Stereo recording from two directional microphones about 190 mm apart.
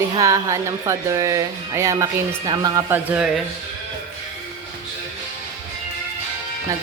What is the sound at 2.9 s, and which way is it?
Speech, 5° right (ahead or behind).